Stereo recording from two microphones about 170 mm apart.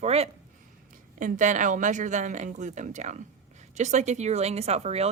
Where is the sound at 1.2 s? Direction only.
50° right (ahead or behind).